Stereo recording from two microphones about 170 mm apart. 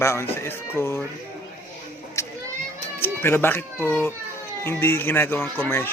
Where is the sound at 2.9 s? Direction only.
15° left (ahead or behind).